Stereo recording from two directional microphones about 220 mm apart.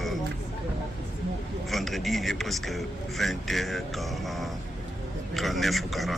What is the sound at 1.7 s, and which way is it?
Speech, centre (ahead or behind).